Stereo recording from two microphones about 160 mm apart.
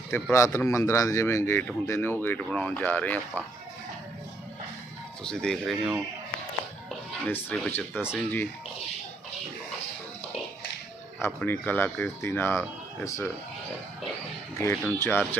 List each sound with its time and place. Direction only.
0.1 s speech: 15° left (ahead or behind)
5.2 s speech: 5° left (ahead or behind)
7.7 s speech: 10° left (ahead or behind)
11.2 s speech: 10° left (ahead or behind)
14.6 s speech: 15° left (ahead or behind)